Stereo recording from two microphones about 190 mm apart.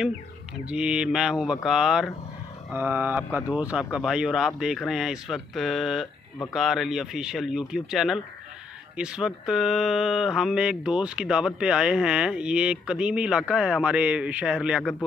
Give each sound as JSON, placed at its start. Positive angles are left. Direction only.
{"t": 0.7, "sound": "speech", "side_deg": -5}